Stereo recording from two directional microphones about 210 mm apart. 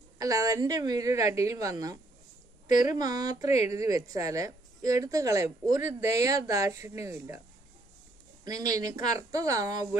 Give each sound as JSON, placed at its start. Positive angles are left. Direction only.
{"t": 0.2, "sound": "a woman's voice", "side_deg": -15}
{"t": 3.0, "sound": "a woman's voice", "side_deg": -20}
{"t": 8.5, "sound": "a woman's voice", "side_deg": -15}